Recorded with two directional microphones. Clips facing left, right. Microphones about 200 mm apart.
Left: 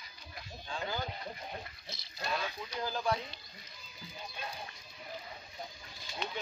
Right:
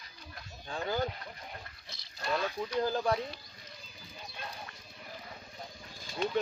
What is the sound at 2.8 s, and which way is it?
Speech, 40° right (ahead or behind).